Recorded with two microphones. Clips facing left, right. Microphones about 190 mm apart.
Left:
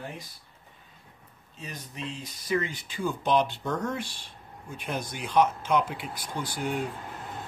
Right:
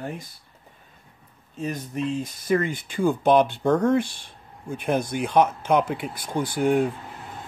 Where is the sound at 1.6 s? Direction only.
50° right (ahead or behind).